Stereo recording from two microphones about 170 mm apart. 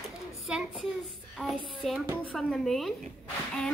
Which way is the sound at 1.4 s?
Centre (ahead or behind).